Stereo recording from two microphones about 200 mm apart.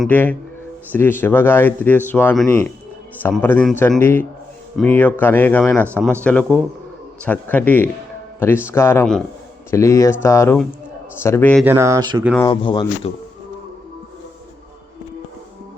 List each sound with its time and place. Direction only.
0.0 s a man's voice: 10° left (ahead or behind)
11.6 s speech: 15° right (ahead or behind)
12.4 s speech: 20° left (ahead or behind)